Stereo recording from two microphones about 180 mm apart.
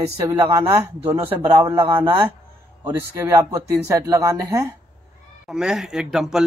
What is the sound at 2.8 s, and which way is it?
Speech, 15° right (ahead or behind).